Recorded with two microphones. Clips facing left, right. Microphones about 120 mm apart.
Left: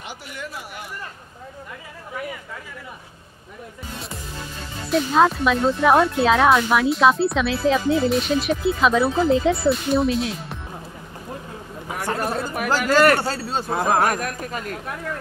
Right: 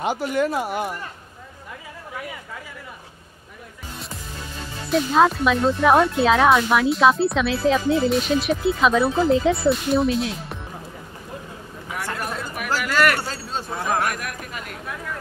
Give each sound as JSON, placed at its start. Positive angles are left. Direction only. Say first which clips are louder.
{"t": 0.1, "sound": "speech", "louder": "right 13 dB", "side_deg": -45}
{"t": 0.4, "sound": "speech", "louder": "right 12 dB", "side_deg": -60}
{"t": 4.9, "sound": "speech", "louder": "even", "side_deg": 0}
{"t": 11.9, "sound": "speech", "louder": "left 4 dB", "side_deg": 35}